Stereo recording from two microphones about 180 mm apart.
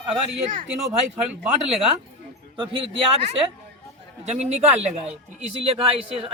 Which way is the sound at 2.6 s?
30° right (ahead or behind).